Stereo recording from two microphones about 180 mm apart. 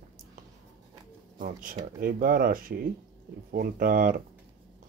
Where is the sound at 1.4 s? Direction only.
50° right (ahead or behind).